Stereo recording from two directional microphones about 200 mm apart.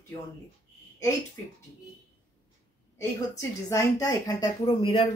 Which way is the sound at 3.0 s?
15° left (ahead or behind).